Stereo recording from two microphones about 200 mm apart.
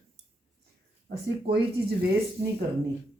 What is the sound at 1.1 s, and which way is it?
Speech, 50° right (ahead or behind).